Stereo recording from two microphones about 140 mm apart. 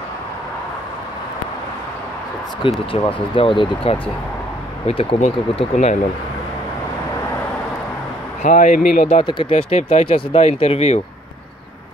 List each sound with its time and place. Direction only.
2.6 s speech: 35° left (ahead or behind); by 5.9 s 55° left (ahead or behind)
8.4 s speech: 65° left (ahead or behind)
9.0 s speech: 45° left (ahead or behind)